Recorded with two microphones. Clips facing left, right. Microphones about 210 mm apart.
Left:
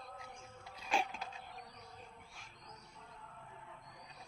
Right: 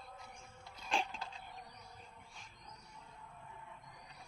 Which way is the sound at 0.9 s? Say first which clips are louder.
Left 1 dB; 5° left (ahead or behind).